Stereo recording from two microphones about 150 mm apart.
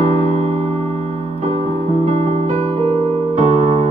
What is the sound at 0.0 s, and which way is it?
Music, 45° right (ahead or behind).